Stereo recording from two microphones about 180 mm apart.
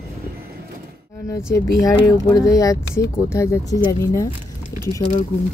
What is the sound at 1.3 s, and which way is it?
Speech, 20° left (ahead or behind).